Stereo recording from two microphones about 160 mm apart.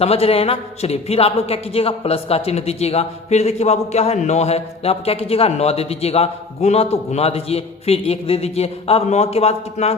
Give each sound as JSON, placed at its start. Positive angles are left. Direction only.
{"t": 0.0, "sound": "speech", "side_deg": 40}